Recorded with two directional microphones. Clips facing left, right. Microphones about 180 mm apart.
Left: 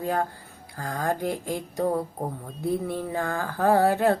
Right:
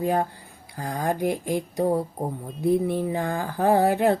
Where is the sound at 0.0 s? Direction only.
15° right (ahead or behind).